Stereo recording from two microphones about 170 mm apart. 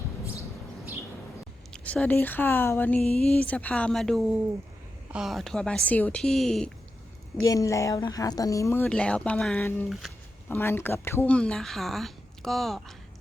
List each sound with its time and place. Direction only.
1.7 s a woman's voice: 10° left (ahead or behind)
7.4 s a woman's voice: 20° left (ahead or behind); by 12.8 s centre (ahead or behind)